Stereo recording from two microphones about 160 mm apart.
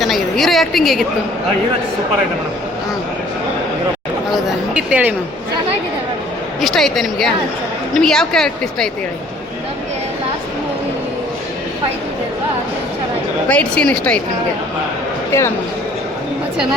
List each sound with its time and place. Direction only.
0.0 s a woman's voice: centre (ahead or behind)
4.3 s a sound: 5° right (ahead or behind)
6.6 s a woman's voice: centre (ahead or behind)
13.5 s a woman's voice: 10° left (ahead or behind)
15.3 s speech: 20° left (ahead or behind)